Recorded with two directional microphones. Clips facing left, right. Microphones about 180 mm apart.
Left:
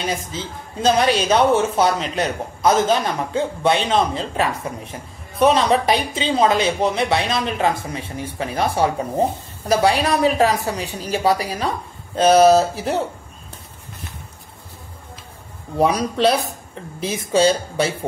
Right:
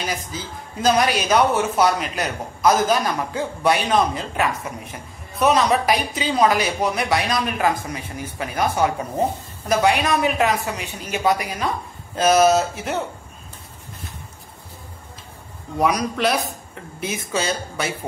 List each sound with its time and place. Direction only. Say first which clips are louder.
0.0 s a woman's voice: left 3 dB; 25° left (ahead or behind)
15.8 s a woman's voice: left 3 dB; 30° left (ahead or behind)